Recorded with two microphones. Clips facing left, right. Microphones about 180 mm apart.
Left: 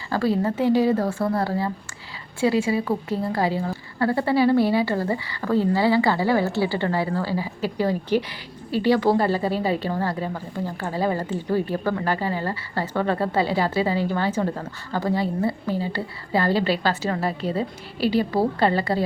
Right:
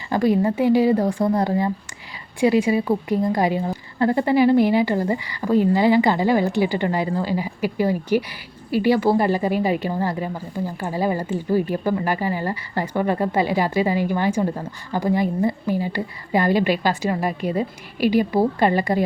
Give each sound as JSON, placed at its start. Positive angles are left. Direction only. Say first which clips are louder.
{"t": 0.1, "sound": "a woman's voice", "louder": "right 4 dB", "side_deg": -15}